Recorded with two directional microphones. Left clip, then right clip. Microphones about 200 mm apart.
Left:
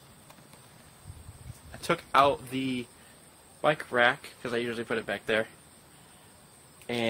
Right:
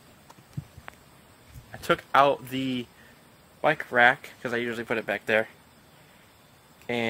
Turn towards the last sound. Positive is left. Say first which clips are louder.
# right 2 dB
turn(degrees=-15)  # may be behind; listen again after turning